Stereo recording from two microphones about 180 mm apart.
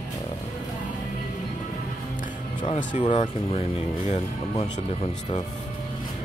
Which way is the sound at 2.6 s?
45° left (ahead or behind).